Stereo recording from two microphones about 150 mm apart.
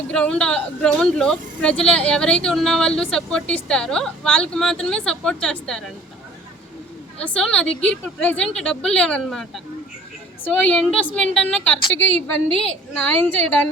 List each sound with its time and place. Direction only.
0.1 s speech: 5° left (ahead or behind)
7.2 s a woman's voice: 5° left (ahead or behind)